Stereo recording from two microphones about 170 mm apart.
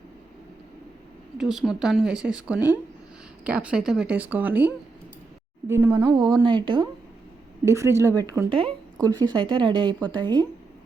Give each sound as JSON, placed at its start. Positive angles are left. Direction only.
{"t": 1.4, "sound": "speech", "side_deg": 0}
{"t": 6.0, "sound": "speech", "side_deg": -25}
{"t": 7.6, "sound": "speech", "side_deg": -15}